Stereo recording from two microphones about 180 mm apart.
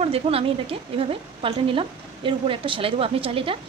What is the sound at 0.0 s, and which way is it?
A woman's voice, 30° right (ahead or behind).